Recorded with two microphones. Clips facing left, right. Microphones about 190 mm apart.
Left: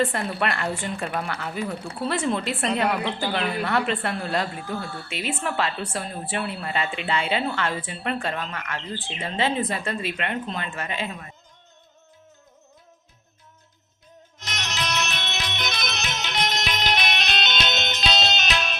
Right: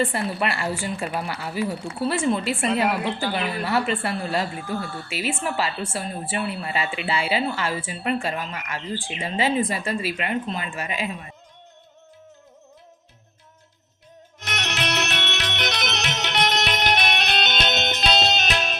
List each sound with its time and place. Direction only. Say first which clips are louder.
0.0 s a woman's voice: even; 5° right (ahead or behind)
14.3 s music: right 3 dB; 60° right (ahead or behind)